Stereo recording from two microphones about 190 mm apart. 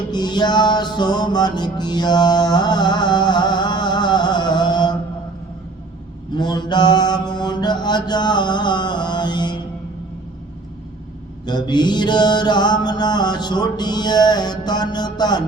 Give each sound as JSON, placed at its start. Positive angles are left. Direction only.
{"t": 0.1, "sound": "music", "side_deg": 20}
{"t": 6.3, "sound": "mantra", "side_deg": 25}
{"t": 11.4, "sound": "mantra", "side_deg": 20}